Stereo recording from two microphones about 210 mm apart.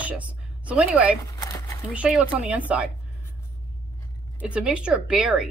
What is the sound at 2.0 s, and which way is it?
Speech, 5° right (ahead or behind).